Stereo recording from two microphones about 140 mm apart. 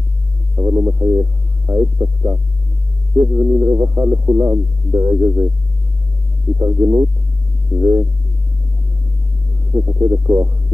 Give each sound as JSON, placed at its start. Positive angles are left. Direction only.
{"t": 0.6, "sound": "speech", "side_deg": -25}
{"t": 6.6, "sound": "speech", "side_deg": -25}
{"t": 9.7, "sound": "speech", "side_deg": -25}